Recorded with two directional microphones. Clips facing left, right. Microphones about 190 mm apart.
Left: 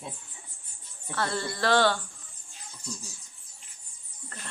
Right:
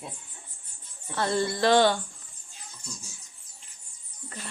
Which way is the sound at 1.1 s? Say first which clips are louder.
Right 4 dB; 20° right (ahead or behind).